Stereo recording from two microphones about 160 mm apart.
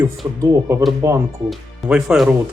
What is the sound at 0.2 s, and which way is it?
Speech, 20° right (ahead or behind).